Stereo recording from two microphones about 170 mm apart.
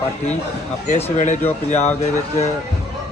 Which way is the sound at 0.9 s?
40° left (ahead or behind).